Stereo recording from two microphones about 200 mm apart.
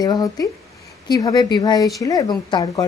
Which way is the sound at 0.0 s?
20° left (ahead or behind).